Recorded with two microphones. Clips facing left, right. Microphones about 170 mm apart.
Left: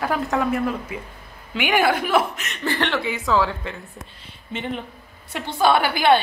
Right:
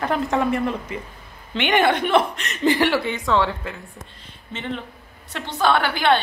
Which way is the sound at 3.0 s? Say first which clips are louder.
Even; centre (ahead or behind).